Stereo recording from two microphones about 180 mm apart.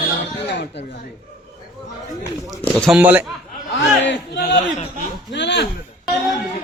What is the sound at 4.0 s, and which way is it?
Speech, 80° left.